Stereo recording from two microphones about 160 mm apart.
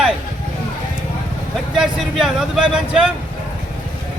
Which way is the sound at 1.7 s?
Centre (ahead or behind).